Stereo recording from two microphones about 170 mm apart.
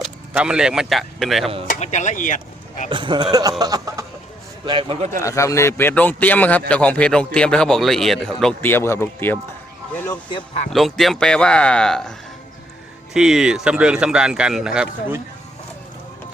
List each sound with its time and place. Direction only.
0.0 s speech: 5° right (ahead or behind)
1.7 s speech: 45° left (ahead or behind)
2.9 s a sound: 30° right (ahead or behind)
4.6 s a man's voice: 30° right (ahead or behind)
5.2 s speech: 20° left (ahead or behind)
10.7 s speech: centre (ahead or behind)
13.1 s speech: 5° right (ahead or behind)